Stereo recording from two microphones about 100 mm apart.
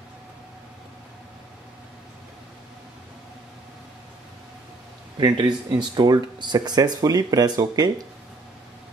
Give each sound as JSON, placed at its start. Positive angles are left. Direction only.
{"t": 5.2, "sound": "speech", "side_deg": -50}